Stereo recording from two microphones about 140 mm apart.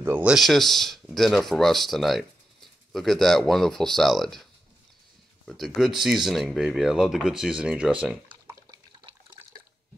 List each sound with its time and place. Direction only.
0.0 s speech: 10° right (ahead or behind)
9.0 s water: 30° right (ahead or behind)